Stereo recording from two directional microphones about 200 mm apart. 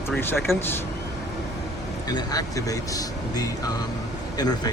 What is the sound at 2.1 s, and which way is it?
Speech, 15° left (ahead or behind).